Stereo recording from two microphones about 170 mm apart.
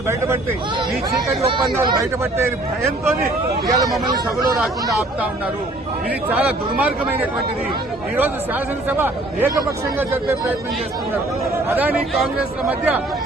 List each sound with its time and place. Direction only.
1.4 s speech: 35° right (ahead or behind)
3.7 s speech: 20° right (ahead or behind)
4.6 s speech: centre (ahead or behind)
8.9 s speech: 15° right (ahead or behind)
11.7 s speech: 10° right (ahead or behind)